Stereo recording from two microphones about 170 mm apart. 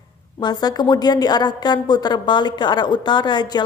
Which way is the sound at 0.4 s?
25° left (ahead or behind).